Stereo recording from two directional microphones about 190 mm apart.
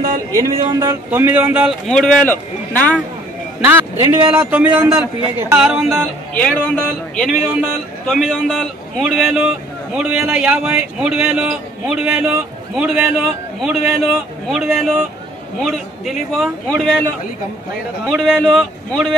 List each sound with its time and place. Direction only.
0.4 s a man's voice: 15° right (ahead or behind); by 3.0 s 10° left (ahead or behind)
4.0 s speech: 25° right (ahead or behind)
4.4 s a man's voice: 10° right (ahead or behind)
18.0 s a man's voice: 5° left (ahead or behind)